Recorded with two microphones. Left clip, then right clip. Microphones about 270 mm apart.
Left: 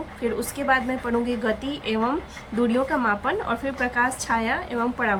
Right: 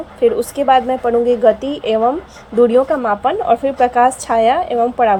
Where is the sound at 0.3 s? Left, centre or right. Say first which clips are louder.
Right 10 dB; centre.